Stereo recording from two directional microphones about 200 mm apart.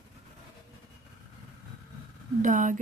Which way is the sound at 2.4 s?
40° right (ahead or behind).